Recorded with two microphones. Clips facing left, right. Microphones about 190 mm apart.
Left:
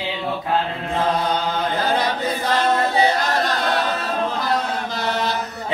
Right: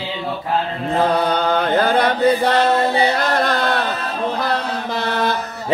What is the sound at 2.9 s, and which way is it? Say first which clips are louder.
A capella: right 2 dB; 55° right (ahead or behind).